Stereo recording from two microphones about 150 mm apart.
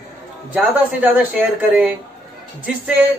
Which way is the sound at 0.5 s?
10° right (ahead or behind).